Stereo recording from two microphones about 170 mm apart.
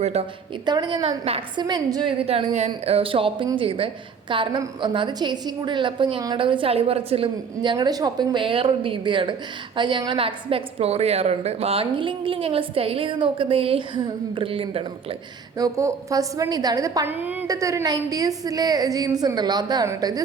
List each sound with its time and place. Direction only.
0.0 s a woman's voice: 40° right (ahead or behind)
0.6 s a woman's voice: 25° right (ahead or behind)
1.2 s a woman's voice: 35° right (ahead or behind)
1.6 s a woman's voice: 25° right (ahead or behind)
15.5 s a woman's voice: 20° right (ahead or behind)